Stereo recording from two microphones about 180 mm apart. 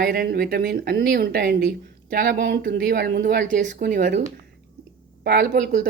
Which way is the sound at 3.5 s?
45° right (ahead or behind).